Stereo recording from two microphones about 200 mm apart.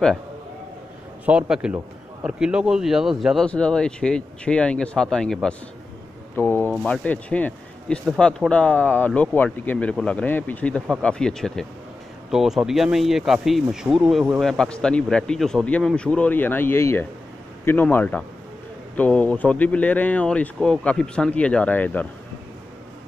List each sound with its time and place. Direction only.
1.2 s a man's voice: 5° right (ahead or behind)